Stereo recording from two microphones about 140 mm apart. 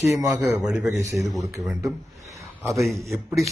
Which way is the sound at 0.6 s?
5° right (ahead or behind).